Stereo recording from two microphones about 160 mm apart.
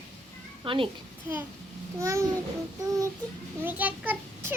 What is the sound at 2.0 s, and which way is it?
Speech, 20° right (ahead or behind).